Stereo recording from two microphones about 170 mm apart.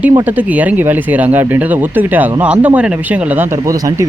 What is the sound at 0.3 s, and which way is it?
Speech, 10° right (ahead or behind).